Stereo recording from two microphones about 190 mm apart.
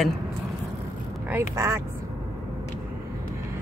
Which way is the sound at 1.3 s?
15° right (ahead or behind).